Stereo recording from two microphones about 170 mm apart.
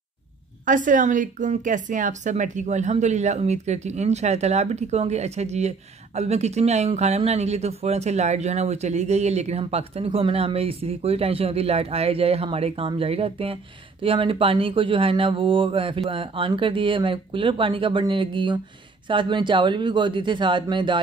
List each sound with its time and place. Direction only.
0.7 s a woman's voice: 50° right (ahead or behind); by 21.0 s 25° right (ahead or behind)